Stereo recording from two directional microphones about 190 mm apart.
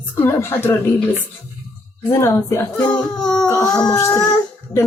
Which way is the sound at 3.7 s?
20° left (ahead or behind).